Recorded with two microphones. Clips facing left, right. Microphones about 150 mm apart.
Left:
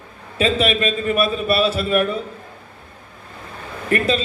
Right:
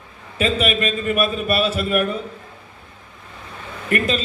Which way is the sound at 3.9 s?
30° left (ahead or behind).